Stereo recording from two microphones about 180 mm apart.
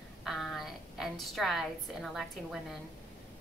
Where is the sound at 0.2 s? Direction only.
Centre (ahead or behind).